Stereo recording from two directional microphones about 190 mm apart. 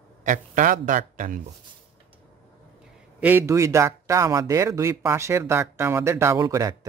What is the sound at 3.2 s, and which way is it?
Speech, 10° right (ahead or behind).